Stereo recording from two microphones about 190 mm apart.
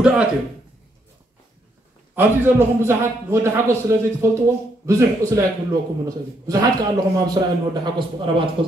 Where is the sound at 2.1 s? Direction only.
10° right (ahead or behind).